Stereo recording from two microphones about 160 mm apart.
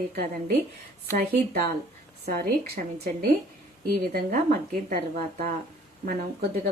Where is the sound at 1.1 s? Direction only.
80° right.